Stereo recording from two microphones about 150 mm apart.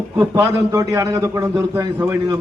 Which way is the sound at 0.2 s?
20° right (ahead or behind).